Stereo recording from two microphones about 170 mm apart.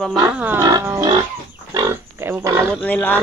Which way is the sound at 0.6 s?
20° right (ahead or behind).